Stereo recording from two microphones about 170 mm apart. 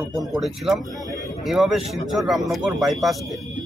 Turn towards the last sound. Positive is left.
turn(degrees=0)  # may be behind; listen again after turning